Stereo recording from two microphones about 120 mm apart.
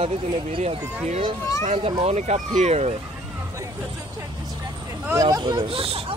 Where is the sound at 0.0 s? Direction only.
55° right (ahead or behind).